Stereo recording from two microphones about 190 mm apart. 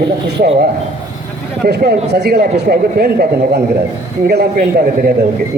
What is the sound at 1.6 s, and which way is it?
Speech, 55° right (ahead or behind).